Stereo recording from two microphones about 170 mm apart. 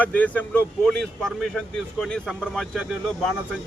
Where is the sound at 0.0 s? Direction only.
10° left (ahead or behind).